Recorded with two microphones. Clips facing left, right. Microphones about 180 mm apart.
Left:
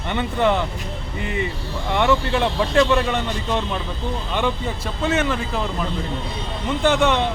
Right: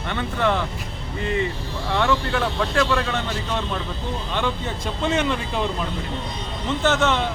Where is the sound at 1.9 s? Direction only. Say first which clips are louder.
Left 3 dB; 20° left (ahead or behind).